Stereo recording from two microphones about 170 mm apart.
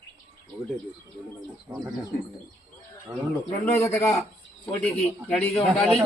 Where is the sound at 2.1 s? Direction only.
65° left (ahead or behind).